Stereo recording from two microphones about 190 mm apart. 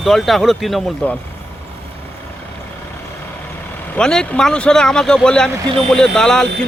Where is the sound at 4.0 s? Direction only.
5° left (ahead or behind).